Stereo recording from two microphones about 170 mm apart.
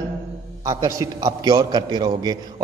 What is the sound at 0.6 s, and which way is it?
A man's voice, 20° right (ahead or behind).